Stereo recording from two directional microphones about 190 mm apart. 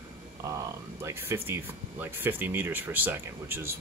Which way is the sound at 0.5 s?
15° right (ahead or behind).